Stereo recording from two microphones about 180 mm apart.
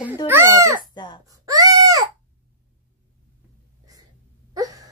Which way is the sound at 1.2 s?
20° right (ahead or behind).